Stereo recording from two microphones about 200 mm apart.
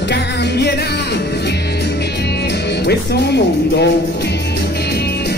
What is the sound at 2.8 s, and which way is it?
Speech, 55° left (ahead or behind).